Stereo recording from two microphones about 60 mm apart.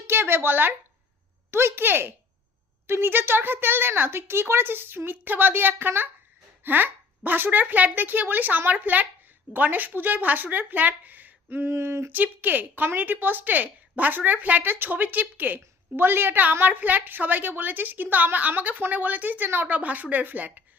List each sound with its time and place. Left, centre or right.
0.1 s a woman's voice: right
6.6 s a sound: right
7.3 s a woman's voice: right
12.1 s a woman's voice: right